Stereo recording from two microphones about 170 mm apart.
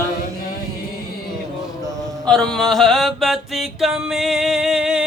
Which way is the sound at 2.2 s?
5° left (ahead or behind).